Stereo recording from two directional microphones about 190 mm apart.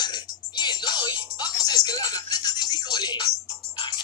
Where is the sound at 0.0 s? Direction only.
20° left (ahead or behind).